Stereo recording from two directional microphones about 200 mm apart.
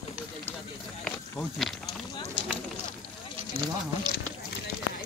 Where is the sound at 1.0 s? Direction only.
Centre (ahead or behind).